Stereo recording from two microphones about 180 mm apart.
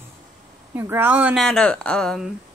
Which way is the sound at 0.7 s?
15° right (ahead or behind).